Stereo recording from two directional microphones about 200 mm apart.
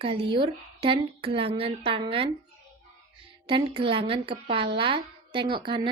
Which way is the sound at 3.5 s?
25° right (ahead or behind).